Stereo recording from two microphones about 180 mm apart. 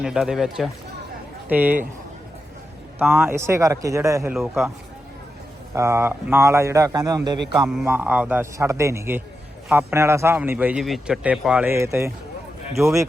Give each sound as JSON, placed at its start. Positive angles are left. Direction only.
{"t": 0.0, "sound": "a man's voice", "side_deg": -5}
{"t": 3.0, "sound": "a man's voice", "side_deg": -10}
{"t": 4.4, "sound": "speech", "side_deg": 0}
{"t": 5.7, "sound": "a man's voice", "side_deg": -15}
{"t": 7.7, "sound": "a man's voice", "side_deg": -5}